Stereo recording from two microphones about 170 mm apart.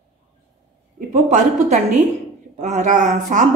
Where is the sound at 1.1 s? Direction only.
45° right (ahead or behind).